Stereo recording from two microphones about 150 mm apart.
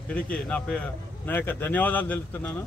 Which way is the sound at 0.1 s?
5° left (ahead or behind).